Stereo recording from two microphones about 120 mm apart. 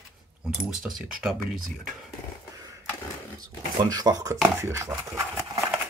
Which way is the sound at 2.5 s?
30° right (ahead or behind).